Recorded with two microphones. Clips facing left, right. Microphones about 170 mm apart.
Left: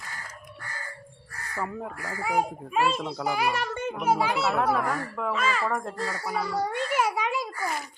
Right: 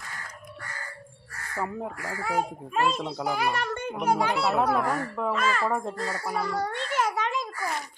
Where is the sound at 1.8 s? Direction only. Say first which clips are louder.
Right 2 dB; 20° right (ahead or behind).